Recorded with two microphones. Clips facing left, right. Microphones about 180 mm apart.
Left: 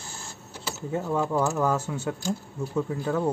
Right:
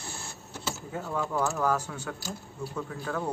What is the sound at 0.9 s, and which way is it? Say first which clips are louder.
Speech: left 6 dB; 25° left (ahead or behind).